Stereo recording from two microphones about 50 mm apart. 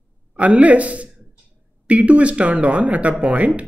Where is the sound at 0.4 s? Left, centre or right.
Right.